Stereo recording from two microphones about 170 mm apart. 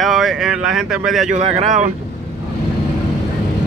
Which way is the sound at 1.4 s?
45° right (ahead or behind).